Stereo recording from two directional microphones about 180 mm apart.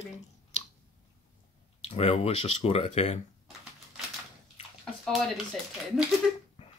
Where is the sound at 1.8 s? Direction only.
35° left (ahead or behind).